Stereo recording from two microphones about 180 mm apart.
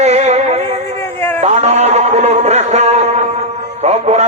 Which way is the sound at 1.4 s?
40° right (ahead or behind).